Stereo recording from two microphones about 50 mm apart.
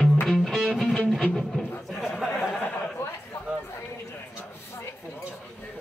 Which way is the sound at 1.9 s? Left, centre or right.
Centre.